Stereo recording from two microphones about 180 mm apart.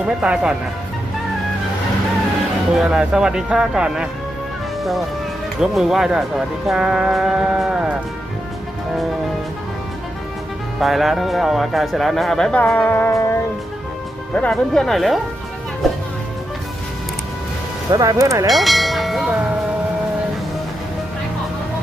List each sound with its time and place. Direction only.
0.2 s speech: 5° right (ahead or behind)
2.7 s speech: 5° right (ahead or behind)
10.8 s speech: centre (ahead or behind); by 13.3 s 15° left (ahead or behind)
14.3 s speech: 5° left (ahead or behind)
17.9 s speech: 20° right (ahead or behind)
18.4 s church bell: centre (ahead or behind)